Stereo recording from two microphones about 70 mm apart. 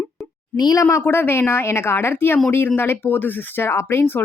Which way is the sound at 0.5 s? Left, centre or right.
Left.